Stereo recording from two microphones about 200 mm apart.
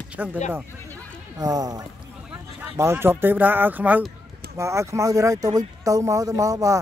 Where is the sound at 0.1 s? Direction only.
10° right (ahead or behind).